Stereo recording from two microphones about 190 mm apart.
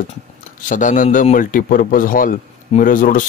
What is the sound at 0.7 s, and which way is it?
A man's voice, 40° left (ahead or behind).